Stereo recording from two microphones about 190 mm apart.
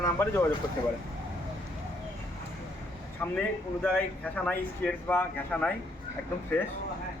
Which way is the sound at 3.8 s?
5° left (ahead or behind).